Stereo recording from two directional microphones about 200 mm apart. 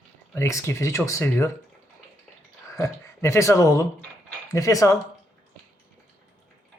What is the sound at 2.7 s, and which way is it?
Speech, 15° left (ahead or behind).